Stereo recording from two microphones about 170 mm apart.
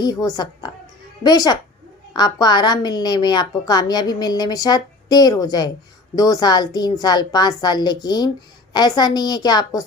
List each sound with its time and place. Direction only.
0.0 s a woman's voice: 25° left (ahead or behind)